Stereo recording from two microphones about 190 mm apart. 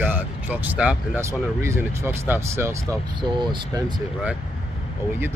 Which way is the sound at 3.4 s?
25° right (ahead or behind).